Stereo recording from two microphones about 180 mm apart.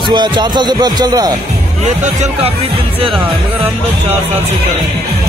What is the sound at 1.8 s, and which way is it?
Speech, 40° right (ahead or behind).